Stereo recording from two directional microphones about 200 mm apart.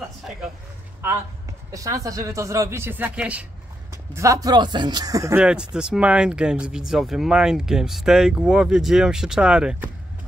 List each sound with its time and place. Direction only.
1.7 s speech: 15° right (ahead or behind)
5.4 s speech: 5° right (ahead or behind)